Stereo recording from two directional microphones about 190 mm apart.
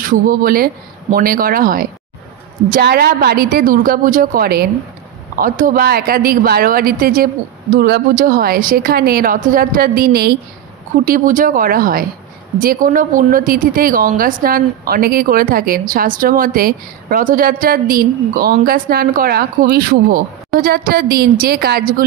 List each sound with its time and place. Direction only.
0.0 s a woman's voice: 45° right (ahead or behind)